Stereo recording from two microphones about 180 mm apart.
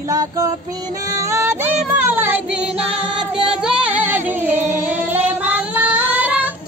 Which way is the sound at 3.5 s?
5° right (ahead or behind).